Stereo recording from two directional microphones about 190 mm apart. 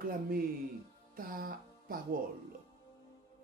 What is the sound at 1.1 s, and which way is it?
Music, 50° right (ahead or behind).